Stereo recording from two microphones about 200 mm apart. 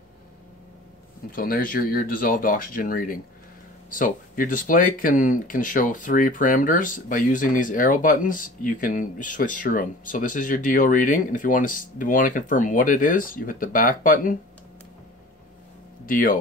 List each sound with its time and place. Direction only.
1.3 s speech: 45° left (ahead or behind)
16.1 s speech: 45° left (ahead or behind)